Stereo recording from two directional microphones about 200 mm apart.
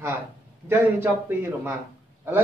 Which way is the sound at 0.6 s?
10° right (ahead or behind).